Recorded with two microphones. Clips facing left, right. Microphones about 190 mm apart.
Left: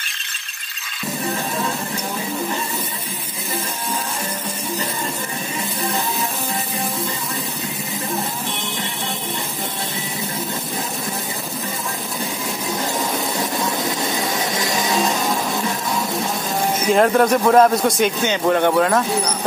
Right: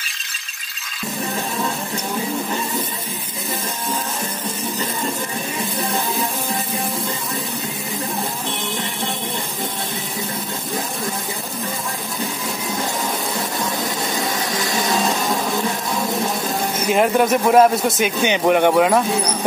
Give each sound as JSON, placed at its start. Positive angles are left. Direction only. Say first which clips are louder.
{"t": 16.9, "sound": "a man's voice", "louder": "left 1 dB", "side_deg": -5}
{"t": 18.2, "sound": "speech", "louder": "right 4 dB", "side_deg": -15}